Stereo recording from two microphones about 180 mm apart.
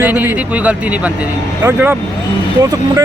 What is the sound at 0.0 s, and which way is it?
Speech, 10° right (ahead or behind).